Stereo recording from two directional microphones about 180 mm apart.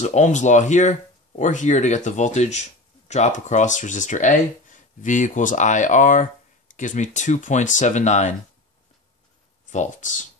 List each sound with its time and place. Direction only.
0.0 s speech: 40° left (ahead or behind)
9.7 s speech: 45° left (ahead or behind)